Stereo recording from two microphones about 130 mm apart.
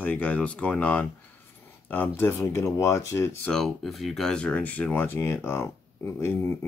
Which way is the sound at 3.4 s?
Centre (ahead or behind).